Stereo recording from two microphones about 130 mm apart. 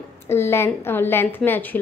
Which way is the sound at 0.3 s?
20° left (ahead or behind).